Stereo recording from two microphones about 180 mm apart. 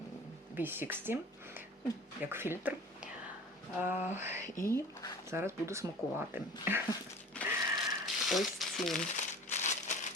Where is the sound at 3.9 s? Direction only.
40° left (ahead or behind).